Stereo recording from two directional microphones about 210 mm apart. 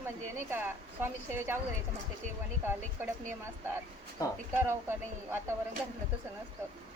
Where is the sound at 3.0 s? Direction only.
10° right (ahead or behind).